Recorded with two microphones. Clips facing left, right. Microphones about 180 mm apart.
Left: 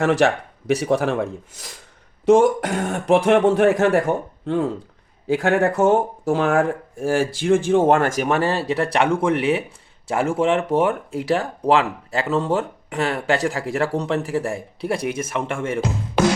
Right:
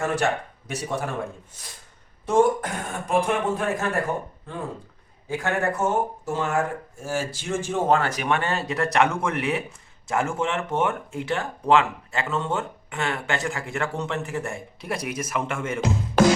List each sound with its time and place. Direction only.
0.0 s speech: 85° left; by 15.8 s 30° left (ahead or behind)